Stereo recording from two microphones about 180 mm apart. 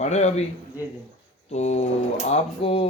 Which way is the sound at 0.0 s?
40° left (ahead or behind).